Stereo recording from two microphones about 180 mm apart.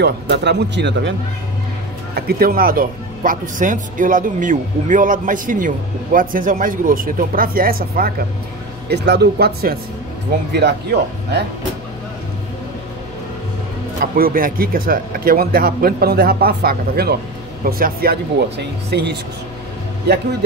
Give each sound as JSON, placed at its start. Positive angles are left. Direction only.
{"t": 0.0, "sound": "speech", "side_deg": -70}
{"t": 2.1, "sound": "speech", "side_deg": -55}
{"t": 8.8, "sound": "speech", "side_deg": -65}
{"t": 13.9, "sound": "speech", "side_deg": -55}
{"t": 18.9, "sound": "speech", "side_deg": -65}